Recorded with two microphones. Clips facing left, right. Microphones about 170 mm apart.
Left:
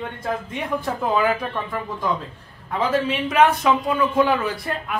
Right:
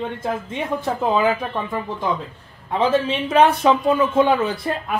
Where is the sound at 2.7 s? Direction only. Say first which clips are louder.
Right 3 dB; 25° right (ahead or behind).